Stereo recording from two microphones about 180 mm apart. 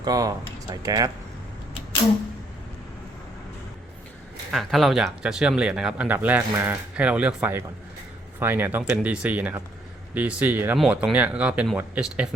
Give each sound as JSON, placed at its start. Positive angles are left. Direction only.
{"t": 0.0, "sound": "speech", "side_deg": -20}
{"t": 4.5, "sound": "speech", "side_deg": 0}